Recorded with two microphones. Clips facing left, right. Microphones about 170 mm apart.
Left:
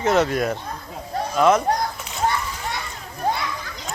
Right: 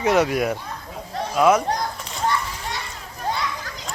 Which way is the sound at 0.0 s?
10° right (ahead or behind).